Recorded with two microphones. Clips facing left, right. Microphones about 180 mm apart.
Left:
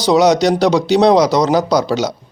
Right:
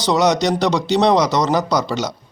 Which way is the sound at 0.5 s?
10° left (ahead or behind).